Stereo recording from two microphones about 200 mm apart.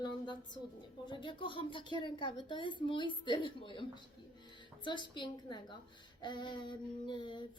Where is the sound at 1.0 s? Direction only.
25° left (ahead or behind).